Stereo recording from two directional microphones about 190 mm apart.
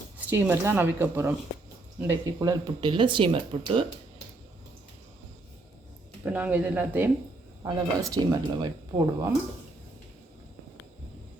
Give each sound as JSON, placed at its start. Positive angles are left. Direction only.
{"t": 0.3, "sound": "speech", "side_deg": -10}
{"t": 6.2, "sound": "speech", "side_deg": -10}